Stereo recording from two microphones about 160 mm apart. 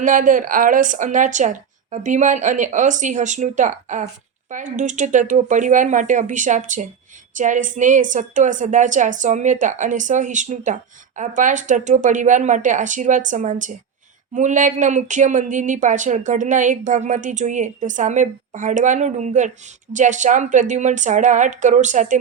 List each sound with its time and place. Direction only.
0.0 s speech: 55° right (ahead or behind)